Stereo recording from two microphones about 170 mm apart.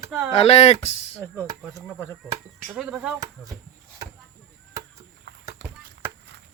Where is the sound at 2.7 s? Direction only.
5° right (ahead or behind).